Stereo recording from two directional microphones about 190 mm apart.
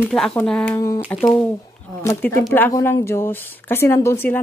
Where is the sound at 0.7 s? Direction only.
15° left (ahead or behind).